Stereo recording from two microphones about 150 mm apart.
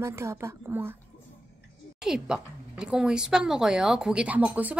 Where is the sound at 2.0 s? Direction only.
5° right (ahead or behind).